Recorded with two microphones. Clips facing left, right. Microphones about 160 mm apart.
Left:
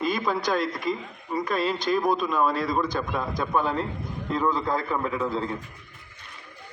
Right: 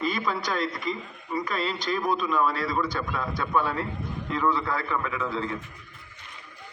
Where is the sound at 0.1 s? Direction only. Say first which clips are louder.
Left 3 dB; 15° left (ahead or behind); by 5.6 s 35° left (ahead or behind).